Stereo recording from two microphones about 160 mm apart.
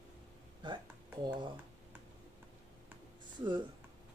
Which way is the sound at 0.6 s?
30° right (ahead or behind).